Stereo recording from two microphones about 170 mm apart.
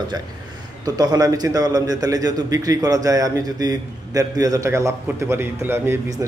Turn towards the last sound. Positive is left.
turn(degrees=-15)  # may be behind; listen again after turning